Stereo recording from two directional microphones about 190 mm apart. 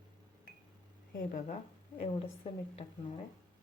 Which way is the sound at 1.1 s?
40° left (ahead or behind).